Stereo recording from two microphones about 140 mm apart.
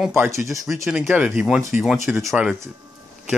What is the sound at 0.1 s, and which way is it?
Speech, 15° right (ahead or behind).